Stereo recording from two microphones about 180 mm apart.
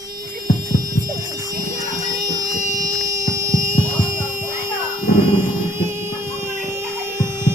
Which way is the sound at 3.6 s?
45° right (ahead or behind).